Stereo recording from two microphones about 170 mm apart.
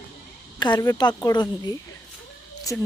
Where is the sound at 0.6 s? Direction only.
25° left (ahead or behind).